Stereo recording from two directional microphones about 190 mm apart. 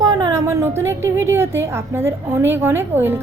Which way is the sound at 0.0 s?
20° right (ahead or behind).